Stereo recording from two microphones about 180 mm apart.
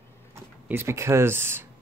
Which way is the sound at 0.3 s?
15° right (ahead or behind).